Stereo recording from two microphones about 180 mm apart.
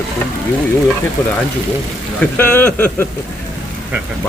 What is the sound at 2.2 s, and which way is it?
Speech, 10° left (ahead or behind).